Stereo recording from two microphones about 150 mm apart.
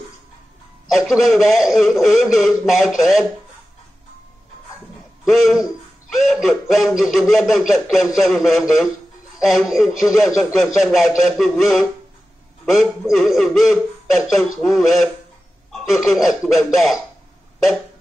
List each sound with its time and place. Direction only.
0.9 s a man's voice: centre (ahead or behind)
5.2 s a man's voice: centre (ahead or behind)